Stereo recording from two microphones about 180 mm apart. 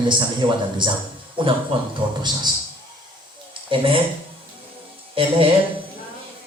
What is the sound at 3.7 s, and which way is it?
Speech, 30° right (ahead or behind).